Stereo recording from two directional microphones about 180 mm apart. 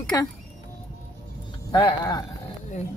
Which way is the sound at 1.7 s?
25° left (ahead or behind).